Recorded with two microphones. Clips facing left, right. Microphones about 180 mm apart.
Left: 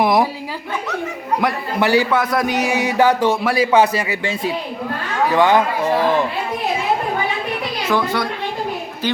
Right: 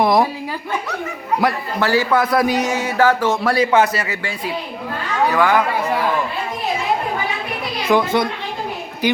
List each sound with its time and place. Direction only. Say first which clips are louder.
0.0 s a sound: even; centre (ahead or behind)
1.8 s a man's voice: left 2 dB; 20° left (ahead or behind)
2.0 s a man's voice: right 2 dB; centre (ahead or behind)
2.6 s a man's voice: left 1 dB; 15° left (ahead or behind)
3.4 s a man's voice: even; 5° left (ahead or behind); by 5.6 s 25° left (ahead or behind)
7.9 s a child's voice: right 4 dB; 20° right (ahead or behind)